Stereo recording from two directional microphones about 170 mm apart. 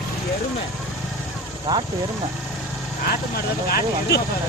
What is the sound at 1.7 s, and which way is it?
Speech, 25° right (ahead or behind).